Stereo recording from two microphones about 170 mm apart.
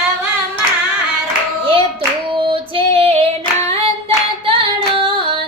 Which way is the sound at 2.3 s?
30° right (ahead or behind).